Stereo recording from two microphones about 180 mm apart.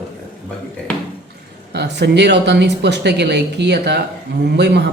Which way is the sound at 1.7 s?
70° right (ahead or behind).